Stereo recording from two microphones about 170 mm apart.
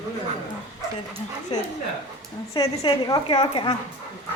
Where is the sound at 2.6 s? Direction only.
25° left (ahead or behind).